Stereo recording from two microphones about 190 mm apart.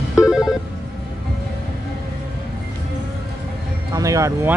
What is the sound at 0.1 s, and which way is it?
Telephone, 5° right (ahead or behind).